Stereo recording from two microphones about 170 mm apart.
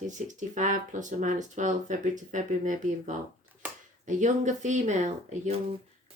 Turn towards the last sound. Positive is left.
turn(degrees=-40)  # may be behind; listen again after turning